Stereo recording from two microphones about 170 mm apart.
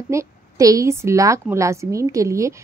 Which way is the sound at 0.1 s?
20° right (ahead or behind).